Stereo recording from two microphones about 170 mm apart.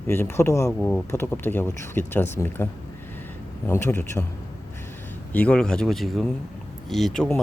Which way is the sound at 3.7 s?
15° left (ahead or behind).